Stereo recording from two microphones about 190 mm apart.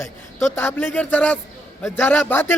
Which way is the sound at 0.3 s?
10° left (ahead or behind).